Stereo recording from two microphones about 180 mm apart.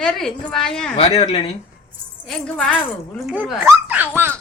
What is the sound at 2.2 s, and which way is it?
A woman's voice, 5° left (ahead or behind).